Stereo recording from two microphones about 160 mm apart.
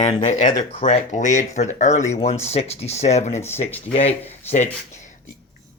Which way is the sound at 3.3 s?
15° left (ahead or behind).